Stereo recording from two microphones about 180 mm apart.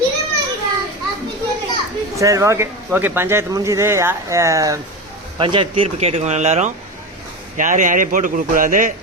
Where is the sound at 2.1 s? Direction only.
15° right (ahead or behind); by 8.9 s 45° right (ahead or behind).